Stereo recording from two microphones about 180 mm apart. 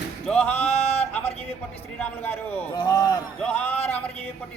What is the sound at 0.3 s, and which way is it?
Music, 10° left (ahead or behind).